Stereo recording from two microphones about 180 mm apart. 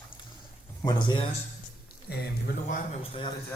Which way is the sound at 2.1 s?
60° left (ahead or behind).